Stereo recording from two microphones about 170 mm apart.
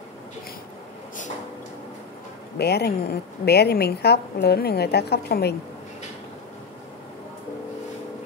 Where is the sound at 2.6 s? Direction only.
70° left (ahead or behind).